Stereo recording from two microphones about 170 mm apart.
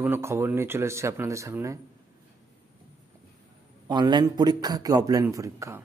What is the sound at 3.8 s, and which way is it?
A man's voice, 25° right (ahead or behind).